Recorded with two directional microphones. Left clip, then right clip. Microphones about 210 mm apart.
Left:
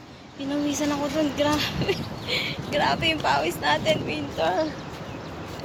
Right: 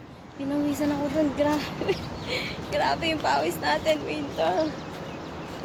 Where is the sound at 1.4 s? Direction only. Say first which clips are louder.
Left 2 dB; centre (ahead or behind).